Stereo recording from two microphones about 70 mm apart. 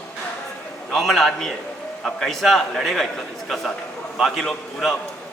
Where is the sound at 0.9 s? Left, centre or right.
Centre.